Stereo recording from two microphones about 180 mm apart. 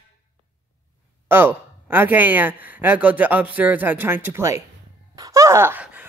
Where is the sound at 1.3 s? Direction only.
10° right (ahead or behind).